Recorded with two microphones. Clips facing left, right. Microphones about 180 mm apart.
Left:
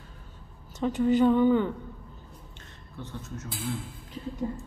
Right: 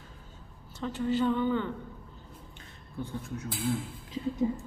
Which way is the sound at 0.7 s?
15° left (ahead or behind).